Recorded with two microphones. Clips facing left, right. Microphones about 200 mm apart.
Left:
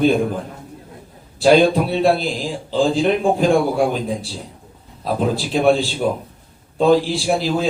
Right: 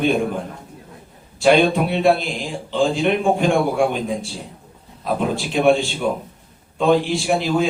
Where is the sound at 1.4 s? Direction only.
35° left (ahead or behind).